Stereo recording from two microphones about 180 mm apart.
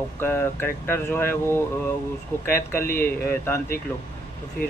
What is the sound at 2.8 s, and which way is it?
Speech, 55° left (ahead or behind).